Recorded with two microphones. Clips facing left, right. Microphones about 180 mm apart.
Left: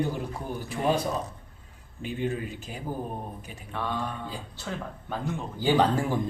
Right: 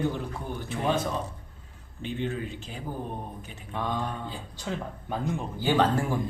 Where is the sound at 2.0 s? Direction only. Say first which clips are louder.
Left 1 dB; 10° left (ahead or behind).